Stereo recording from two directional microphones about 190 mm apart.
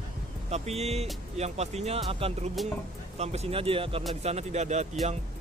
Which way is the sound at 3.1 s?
35° right (ahead or behind).